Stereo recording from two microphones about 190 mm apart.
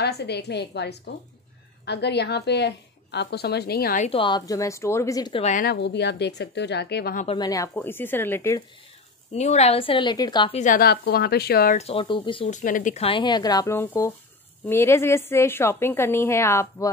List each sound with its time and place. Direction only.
0.0 s a woman's voice: 60° left (ahead or behind)
4.0 s a woman's voice: 30° left (ahead or behind)
5.4 s speech: 40° left (ahead or behind)
5.7 s a woman's voice: 65° left (ahead or behind)
7.2 s a woman's voice: 20° left (ahead or behind)
9.3 s speech: 35° left (ahead or behind)
10.6 s speech: 50° left (ahead or behind)
11.8 s speech: 30° left (ahead or behind)
12.5 s a woman's voice: 45° left (ahead or behind); by 16.9 s 15° left (ahead or behind)